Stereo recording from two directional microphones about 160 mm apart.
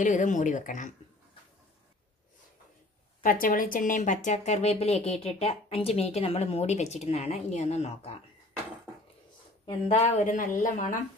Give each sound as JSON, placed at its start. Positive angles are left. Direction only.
{"t": 0.0, "sound": "speech", "side_deg": 50}
{"t": 3.2, "sound": "speech", "side_deg": 60}
{"t": 9.7, "sound": "speech", "side_deg": 40}